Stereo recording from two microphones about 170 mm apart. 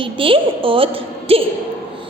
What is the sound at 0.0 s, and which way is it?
A woman's voice, 30° right (ahead or behind).